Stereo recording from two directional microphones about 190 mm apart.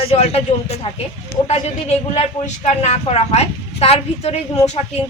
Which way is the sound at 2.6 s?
35° left (ahead or behind).